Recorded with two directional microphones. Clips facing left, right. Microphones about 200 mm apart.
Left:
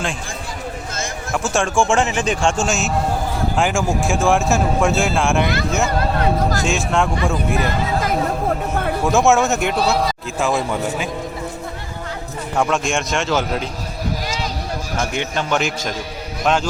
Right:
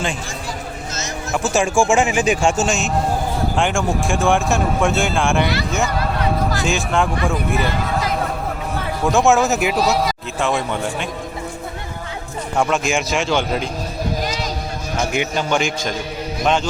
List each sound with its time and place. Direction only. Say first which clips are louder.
1.3 s a man's voice: right 2 dB; 5° right (ahead or behind)
6.0 s a sound: left 2 dB; 45° left (ahead or behind)
6.7 s speech: even; centre (ahead or behind)
9.0 s speech: right 1 dB; centre (ahead or behind)
12.5 s speech: right 1 dB; centre (ahead or behind)
15.1 s a man's voice: right 2 dB; 10° right (ahead or behind)
15.4 s speech: right 1 dB; centre (ahead or behind)